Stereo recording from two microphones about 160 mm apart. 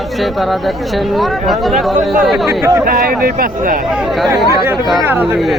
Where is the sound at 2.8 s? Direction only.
60° right (ahead or behind).